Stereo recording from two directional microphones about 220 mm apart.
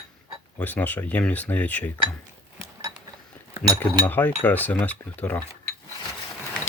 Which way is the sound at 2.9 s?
20° right (ahead or behind).